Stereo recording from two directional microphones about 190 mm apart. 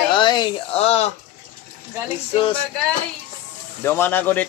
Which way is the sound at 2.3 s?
25° left (ahead or behind).